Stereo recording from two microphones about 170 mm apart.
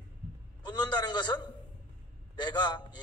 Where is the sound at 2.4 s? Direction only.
25° left (ahead or behind).